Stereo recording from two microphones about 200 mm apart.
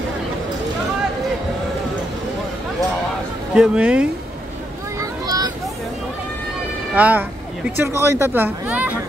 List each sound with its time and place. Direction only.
3.5 s speech: 5° right (ahead or behind)
4.9 s a sound: 15° right (ahead or behind)
7.0 s speech: 10° right (ahead or behind)